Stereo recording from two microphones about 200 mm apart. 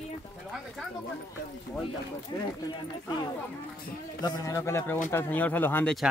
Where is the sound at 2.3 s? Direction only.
20° left (ahead or behind).